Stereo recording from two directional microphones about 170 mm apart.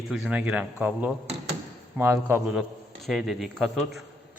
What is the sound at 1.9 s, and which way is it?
A man's voice, 15° right (ahead or behind).